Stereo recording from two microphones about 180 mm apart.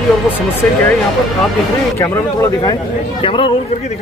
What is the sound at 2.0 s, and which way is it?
Speech, 15° left (ahead or behind).